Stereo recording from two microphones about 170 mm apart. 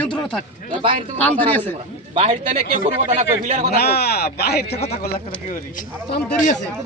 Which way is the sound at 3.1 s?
45° right (ahead or behind).